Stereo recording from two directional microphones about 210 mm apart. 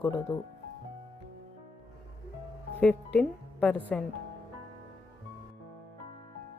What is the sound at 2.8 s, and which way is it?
Speech, 5° left (ahead or behind).